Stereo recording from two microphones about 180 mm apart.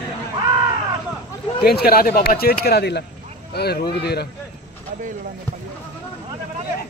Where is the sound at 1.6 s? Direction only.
60° left (ahead or behind).